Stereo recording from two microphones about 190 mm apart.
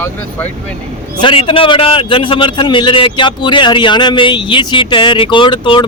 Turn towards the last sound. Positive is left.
turn(degrees=25)  # may be behind; listen again after turning